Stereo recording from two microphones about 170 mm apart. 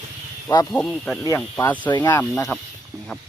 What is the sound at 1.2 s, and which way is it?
Speech, 15° left (ahead or behind).